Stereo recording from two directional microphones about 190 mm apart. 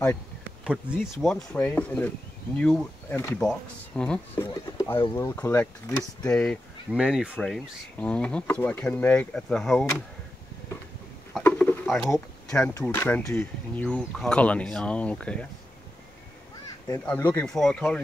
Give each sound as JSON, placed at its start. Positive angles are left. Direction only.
{"t": 1.2, "sound": "speech", "side_deg": 5}
{"t": 4.9, "sound": "speech", "side_deg": 25}
{"t": 5.2, "sound": "speech", "side_deg": 10}
{"t": 6.9, "sound": "speech", "side_deg": -5}
{"t": 11.3, "sound": "a sound", "side_deg": 10}
{"t": 12.1, "sound": "speech", "side_deg": 5}
{"t": 17.0, "sound": "speech", "side_deg": 10}